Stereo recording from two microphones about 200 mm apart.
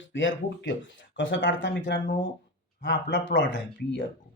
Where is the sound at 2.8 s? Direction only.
65° left (ahead or behind).